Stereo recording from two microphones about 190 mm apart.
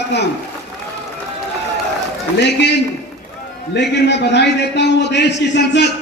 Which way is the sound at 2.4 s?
65° left (ahead or behind).